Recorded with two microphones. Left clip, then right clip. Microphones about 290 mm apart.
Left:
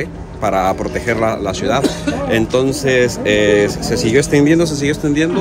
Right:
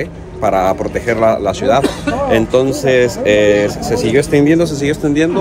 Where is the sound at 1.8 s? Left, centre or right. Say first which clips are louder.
Right 1 dB; right.